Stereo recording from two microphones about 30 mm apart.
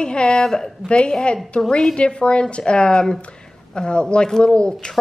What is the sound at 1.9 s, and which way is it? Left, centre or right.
Speech, left.